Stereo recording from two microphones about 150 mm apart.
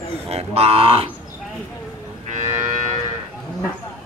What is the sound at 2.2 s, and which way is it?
Moo, 55° right (ahead or behind).